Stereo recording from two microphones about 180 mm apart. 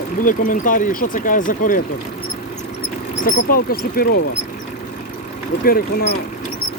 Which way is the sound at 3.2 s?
55° left (ahead or behind).